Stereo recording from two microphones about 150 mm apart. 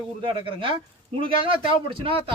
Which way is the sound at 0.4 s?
35° right (ahead or behind).